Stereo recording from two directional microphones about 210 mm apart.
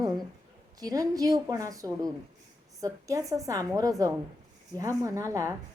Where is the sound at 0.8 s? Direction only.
15° right (ahead or behind).